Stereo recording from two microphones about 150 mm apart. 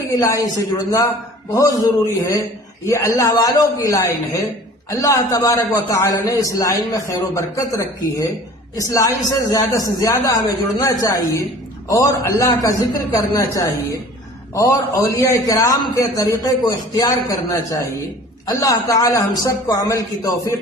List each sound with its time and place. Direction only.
0.1 s a man's voice: 20° left (ahead or behind)